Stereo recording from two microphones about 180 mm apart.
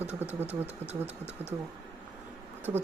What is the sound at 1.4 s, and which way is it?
Speech, 35° right (ahead or behind).